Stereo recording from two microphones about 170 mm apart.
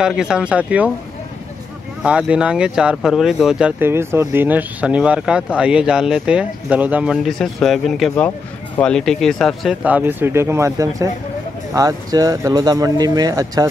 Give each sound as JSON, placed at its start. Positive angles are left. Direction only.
{"t": 0.0, "sound": "speech", "side_deg": -5}
{"t": 2.0, "sound": "speech", "side_deg": -5}